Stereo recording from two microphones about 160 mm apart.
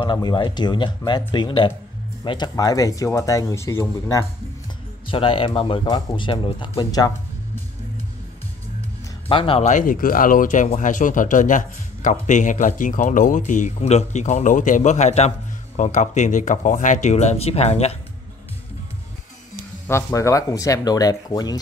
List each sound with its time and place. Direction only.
0.0 s speech: 30° left (ahead or behind)
5.0 s speech: 35° left (ahead or behind)
9.3 s speech: 35° left (ahead or behind)
9.6 s speech: 50° left (ahead or behind)
19.9 s speech: 15° left (ahead or behind)